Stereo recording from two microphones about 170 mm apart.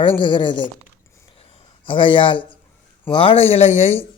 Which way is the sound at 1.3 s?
35° left (ahead or behind).